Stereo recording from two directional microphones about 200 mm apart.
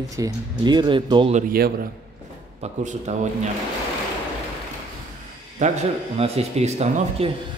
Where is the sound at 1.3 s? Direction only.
50° right (ahead or behind).